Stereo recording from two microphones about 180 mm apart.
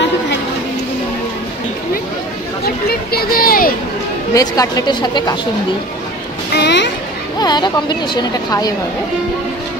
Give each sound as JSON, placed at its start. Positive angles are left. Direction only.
{"t": 2.6, "sound": "speech", "side_deg": 60}
{"t": 4.3, "sound": "speech", "side_deg": 20}
{"t": 6.5, "sound": "speech", "side_deg": 70}
{"t": 7.3, "sound": "speech", "side_deg": 25}